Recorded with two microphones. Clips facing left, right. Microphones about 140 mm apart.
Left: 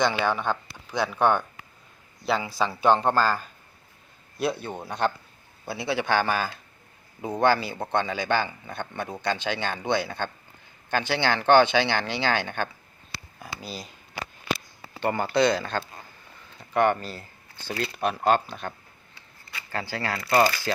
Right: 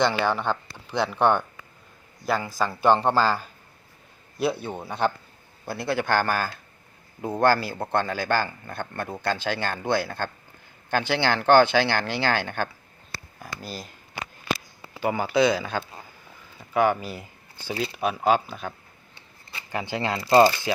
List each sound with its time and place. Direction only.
0.1 s speech: 10° right (ahead or behind)
0.7 s a man's voice: 10° left (ahead or behind)
15.0 s a man's voice: 5° right (ahead or behind)
19.7 s speech: 20° right (ahead or behind)